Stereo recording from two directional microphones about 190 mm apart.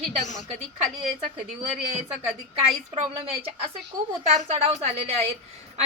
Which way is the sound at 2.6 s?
30° right (ahead or behind).